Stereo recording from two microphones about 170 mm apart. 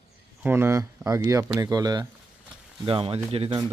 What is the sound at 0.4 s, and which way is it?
Speech, 15° right (ahead or behind).